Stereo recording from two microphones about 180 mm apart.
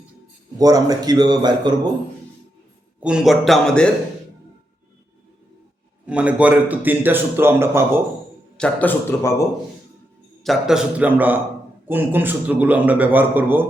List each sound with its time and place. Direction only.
0.6 s a man's voice: 20° right (ahead or behind)
3.0 s a man's voice: 5° right (ahead or behind)
6.1 s a man's voice: 5° right (ahead or behind)
8.5 s a man's voice: 10° left (ahead or behind)
10.4 s a man's voice: centre (ahead or behind)